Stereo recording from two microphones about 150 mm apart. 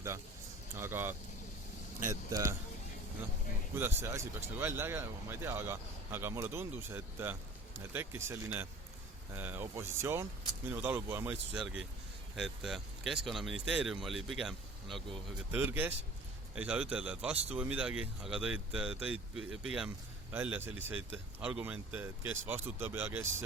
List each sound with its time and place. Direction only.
0.8 s speech: 15° right (ahead or behind)
3.8 s speech: 15° right (ahead or behind)
12.4 s speech: centre (ahead or behind)
15.5 s speech: 15° right (ahead or behind)